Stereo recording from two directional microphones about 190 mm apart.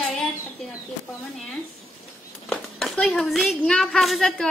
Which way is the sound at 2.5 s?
Centre (ahead or behind).